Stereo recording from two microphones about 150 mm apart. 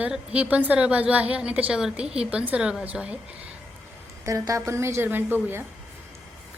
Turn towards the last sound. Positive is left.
turn(degrees=-15)  # may be behind; listen again after turning